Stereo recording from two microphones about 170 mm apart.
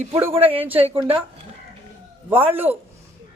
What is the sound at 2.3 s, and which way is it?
Speech, 10° right (ahead or behind).